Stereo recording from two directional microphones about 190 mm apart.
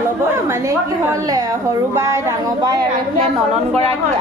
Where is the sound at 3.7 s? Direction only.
30° right (ahead or behind).